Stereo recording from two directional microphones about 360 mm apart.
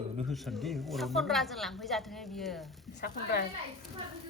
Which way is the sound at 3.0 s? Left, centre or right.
Left.